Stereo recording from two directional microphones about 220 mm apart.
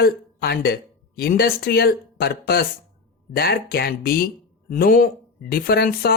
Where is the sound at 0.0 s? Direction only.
45° left (ahead or behind).